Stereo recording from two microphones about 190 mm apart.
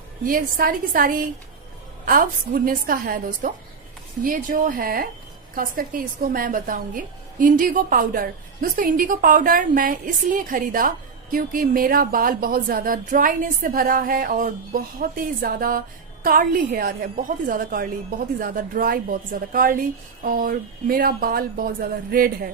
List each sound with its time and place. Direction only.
0.2 s a woman's voice: 50° right (ahead or behind)